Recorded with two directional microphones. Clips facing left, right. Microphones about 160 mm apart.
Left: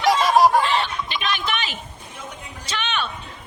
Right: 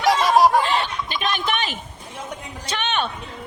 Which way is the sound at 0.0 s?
Centre (ahead or behind).